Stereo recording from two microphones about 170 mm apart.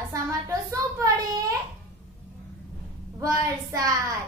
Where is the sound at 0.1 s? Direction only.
20° right (ahead or behind).